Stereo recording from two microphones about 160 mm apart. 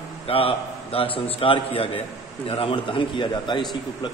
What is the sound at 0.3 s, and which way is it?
A man's voice, 35° left (ahead or behind).